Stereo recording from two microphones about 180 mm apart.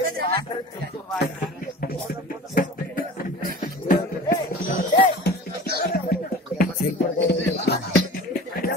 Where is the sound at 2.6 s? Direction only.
50° left (ahead or behind).